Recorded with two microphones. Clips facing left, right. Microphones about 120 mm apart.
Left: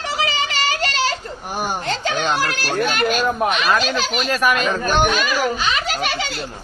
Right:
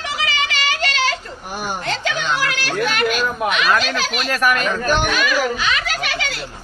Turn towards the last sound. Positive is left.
turn(degrees=30)  # may be behind; listen again after turning